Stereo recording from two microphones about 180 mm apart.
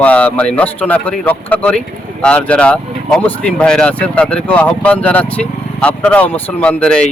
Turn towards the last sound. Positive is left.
turn(degrees=5)  # may be behind; listen again after turning